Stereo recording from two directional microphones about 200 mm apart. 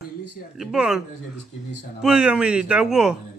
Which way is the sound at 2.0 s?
5° right (ahead or behind).